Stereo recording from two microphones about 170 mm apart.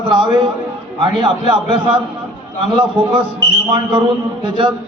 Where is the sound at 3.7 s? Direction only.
30° right (ahead or behind).